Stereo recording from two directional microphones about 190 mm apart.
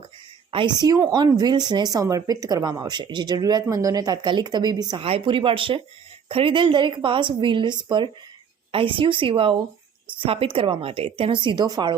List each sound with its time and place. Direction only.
0.5 s speech: 25° right (ahead or behind)